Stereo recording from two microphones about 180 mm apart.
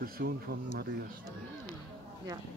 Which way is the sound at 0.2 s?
60° right (ahead or behind).